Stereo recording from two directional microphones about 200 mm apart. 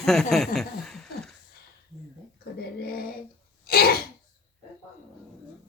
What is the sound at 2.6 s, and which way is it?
Speech, 50° left (ahead or behind).